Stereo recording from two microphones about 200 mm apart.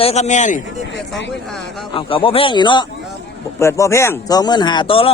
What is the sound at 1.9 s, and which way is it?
A man's voice, 25° left (ahead or behind).